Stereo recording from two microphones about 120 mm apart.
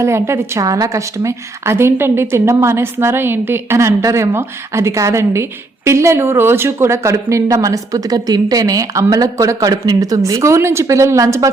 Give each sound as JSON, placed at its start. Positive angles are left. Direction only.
{"t": 0.0, "sound": "a woman's voice", "side_deg": -25}